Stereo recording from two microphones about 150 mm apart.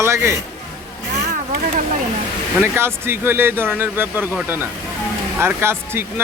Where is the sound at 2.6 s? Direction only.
15° right (ahead or behind).